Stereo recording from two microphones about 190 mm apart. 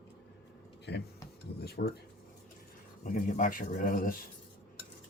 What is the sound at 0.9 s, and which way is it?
Speech, 60° left (ahead or behind).